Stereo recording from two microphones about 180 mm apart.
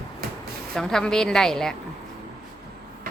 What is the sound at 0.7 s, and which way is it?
A woman's voice, 5° left (ahead or behind).